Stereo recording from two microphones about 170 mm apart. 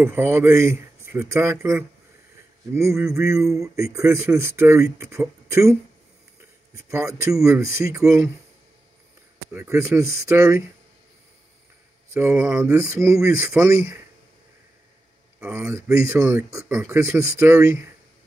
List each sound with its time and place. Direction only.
0.0 s speech: 15° right (ahead or behind)
9.5 s speech: 15° right (ahead or behind)
12.1 s speech: 15° right (ahead or behind)
15.4 s speech: 15° right (ahead or behind)